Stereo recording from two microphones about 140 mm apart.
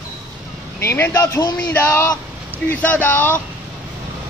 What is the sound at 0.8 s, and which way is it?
Speech, 15° left (ahead or behind).